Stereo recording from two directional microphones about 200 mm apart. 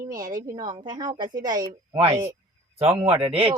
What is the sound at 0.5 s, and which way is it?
Speech, 20° right (ahead or behind).